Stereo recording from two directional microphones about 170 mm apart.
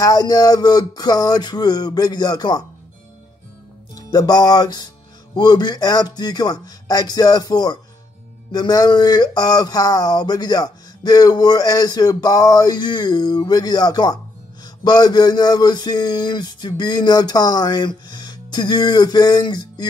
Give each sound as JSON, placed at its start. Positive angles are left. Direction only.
{"t": 0.0, "sound": "speech", "side_deg": 20}
{"t": 3.9, "sound": "speech", "side_deg": 25}